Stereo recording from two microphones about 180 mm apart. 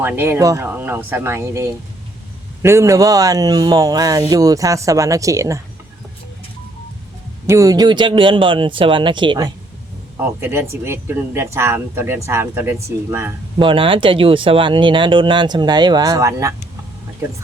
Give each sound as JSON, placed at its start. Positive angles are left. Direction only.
{"t": 0.0, "sound": "speech", "side_deg": -10}
{"t": 7.4, "sound": "speech", "side_deg": -15}
{"t": 10.4, "sound": "speech", "side_deg": -15}
{"t": 13.6, "sound": "speech", "side_deg": -30}